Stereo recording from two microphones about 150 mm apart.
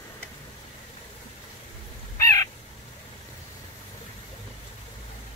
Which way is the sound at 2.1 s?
20° left (ahead or behind).